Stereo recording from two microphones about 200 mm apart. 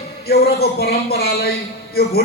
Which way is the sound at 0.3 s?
50° left (ahead or behind).